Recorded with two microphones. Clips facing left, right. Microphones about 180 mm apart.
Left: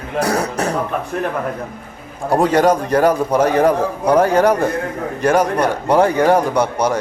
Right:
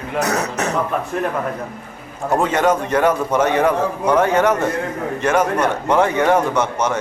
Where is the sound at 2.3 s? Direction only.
35° left (ahead or behind).